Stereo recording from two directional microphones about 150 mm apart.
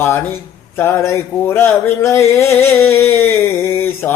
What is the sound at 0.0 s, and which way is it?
Music, 15° left (ahead or behind).